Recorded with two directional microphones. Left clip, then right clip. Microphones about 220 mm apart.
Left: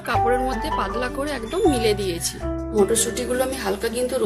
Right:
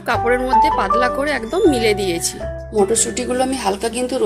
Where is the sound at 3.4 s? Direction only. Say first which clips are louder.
Right 7 dB; 25° right (ahead or behind).